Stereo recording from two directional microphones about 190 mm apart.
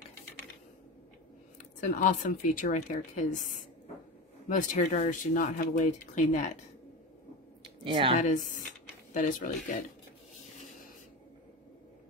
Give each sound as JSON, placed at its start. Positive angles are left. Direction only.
{"t": 1.6, "sound": "speech", "side_deg": 40}
{"t": 7.6, "sound": "a sound", "side_deg": -25}
{"t": 8.2, "sound": "speech", "side_deg": 45}